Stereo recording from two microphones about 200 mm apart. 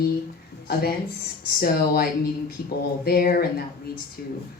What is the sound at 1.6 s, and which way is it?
A woman's voice, 50° left (ahead or behind).